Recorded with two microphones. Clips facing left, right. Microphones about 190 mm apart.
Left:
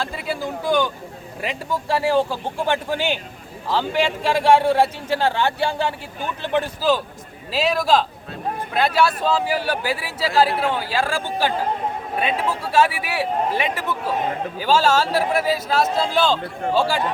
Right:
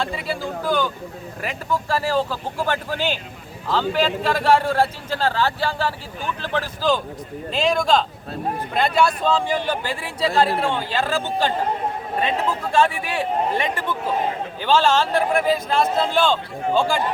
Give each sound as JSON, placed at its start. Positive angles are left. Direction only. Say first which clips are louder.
{"t": 2.0, "sound": "a man's voice", "louder": "left 3 dB", "side_deg": 15}
{"t": 7.5, "sound": "a man's voice", "louder": "even", "side_deg": 5}